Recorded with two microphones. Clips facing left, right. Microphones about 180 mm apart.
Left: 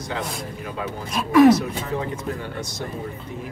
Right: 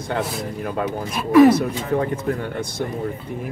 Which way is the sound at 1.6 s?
55° right (ahead or behind).